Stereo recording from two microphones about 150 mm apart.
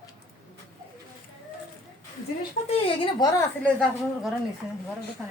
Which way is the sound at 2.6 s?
55° left (ahead or behind).